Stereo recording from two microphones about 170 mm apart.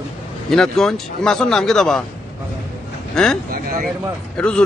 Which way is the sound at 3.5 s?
60° right (ahead or behind).